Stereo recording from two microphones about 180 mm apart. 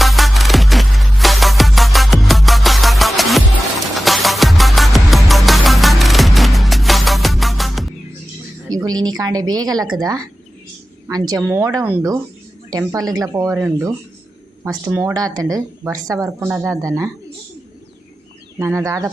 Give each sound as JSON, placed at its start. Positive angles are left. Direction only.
{"t": 0.0, "sound": "music", "side_deg": 0}
{"t": 8.7, "sound": "speech", "side_deg": -20}
{"t": 18.6, "sound": "speech", "side_deg": -15}